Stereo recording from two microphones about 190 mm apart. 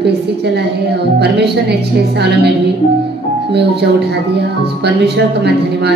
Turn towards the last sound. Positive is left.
turn(degrees=-60)  # may be behind; listen again after turning